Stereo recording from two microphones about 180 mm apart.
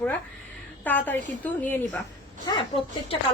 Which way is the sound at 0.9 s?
10° left (ahead or behind).